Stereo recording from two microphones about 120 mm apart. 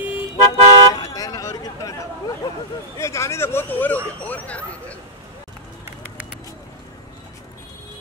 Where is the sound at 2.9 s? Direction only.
25° left (ahead or behind).